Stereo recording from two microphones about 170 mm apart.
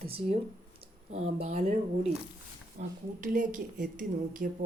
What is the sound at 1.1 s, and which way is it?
A woman's voice, 35° right (ahead or behind).